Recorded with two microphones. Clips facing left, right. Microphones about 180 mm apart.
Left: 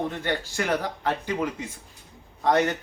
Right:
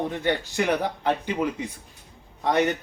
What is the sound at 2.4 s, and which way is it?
Speech, 20° right (ahead or behind).